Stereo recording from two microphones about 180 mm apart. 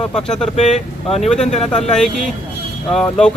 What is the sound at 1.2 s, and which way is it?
Speech, 5° left (ahead or behind).